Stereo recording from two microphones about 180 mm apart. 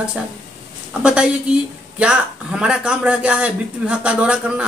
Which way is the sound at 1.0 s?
5° right (ahead or behind).